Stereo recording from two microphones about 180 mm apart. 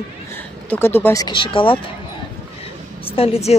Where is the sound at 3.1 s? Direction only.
35° left (ahead or behind).